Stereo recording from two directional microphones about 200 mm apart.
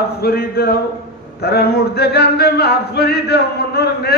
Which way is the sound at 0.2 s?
50° left (ahead or behind).